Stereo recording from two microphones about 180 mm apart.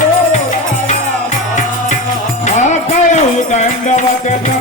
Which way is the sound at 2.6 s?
40° left (ahead or behind).